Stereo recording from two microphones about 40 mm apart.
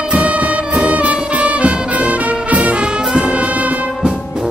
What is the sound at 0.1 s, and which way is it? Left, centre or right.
Music, right.